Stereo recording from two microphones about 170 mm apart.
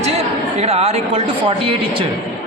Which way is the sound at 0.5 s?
35° right (ahead or behind).